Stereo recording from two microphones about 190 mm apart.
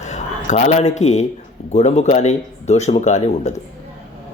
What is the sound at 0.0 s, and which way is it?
A man's voice, 40° left (ahead or behind).